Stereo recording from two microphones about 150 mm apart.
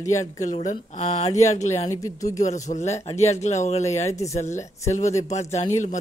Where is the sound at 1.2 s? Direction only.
50° left (ahead or behind).